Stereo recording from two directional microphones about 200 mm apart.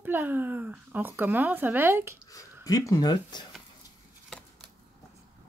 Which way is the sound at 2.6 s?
15° left (ahead or behind).